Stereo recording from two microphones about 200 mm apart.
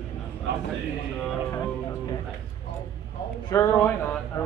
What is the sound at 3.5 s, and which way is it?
Speech, 15° left (ahead or behind).